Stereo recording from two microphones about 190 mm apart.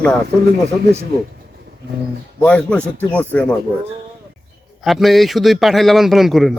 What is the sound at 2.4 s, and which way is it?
Speech, 5° left (ahead or behind).